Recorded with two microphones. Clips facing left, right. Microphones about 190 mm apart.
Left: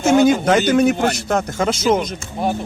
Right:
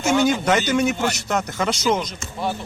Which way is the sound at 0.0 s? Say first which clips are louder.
Left 5 dB; 50° left (ahead or behind).